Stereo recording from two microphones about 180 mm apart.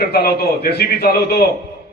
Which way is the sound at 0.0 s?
60° left (ahead or behind).